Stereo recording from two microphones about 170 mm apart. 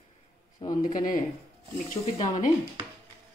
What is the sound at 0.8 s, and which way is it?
Speech, 50° left (ahead or behind).